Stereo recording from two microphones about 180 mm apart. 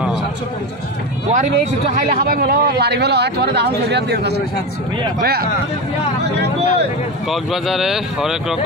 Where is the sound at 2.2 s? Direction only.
55° right (ahead or behind).